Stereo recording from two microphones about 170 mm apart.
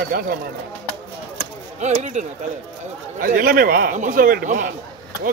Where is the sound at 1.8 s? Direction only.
45° right (ahead or behind).